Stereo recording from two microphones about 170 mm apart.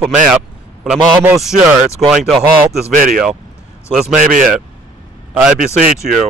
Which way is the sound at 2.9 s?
55° right (ahead or behind).